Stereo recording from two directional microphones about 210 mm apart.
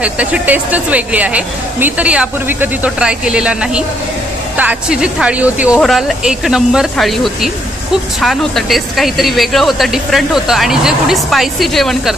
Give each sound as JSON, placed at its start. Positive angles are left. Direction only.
{"t": 0.0, "sound": "speech", "side_deg": -5}